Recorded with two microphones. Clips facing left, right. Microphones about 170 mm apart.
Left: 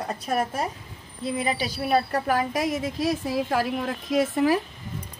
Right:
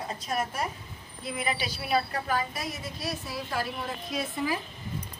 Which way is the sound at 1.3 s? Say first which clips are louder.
Left 5 dB; 30° left (ahead or behind).